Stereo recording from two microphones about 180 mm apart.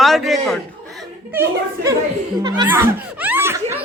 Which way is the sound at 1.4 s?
15° right (ahead or behind).